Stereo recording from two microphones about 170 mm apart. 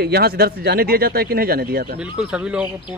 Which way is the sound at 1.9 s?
5° right (ahead or behind).